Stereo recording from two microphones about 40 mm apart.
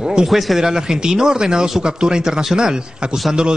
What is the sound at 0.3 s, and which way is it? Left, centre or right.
Speech, centre.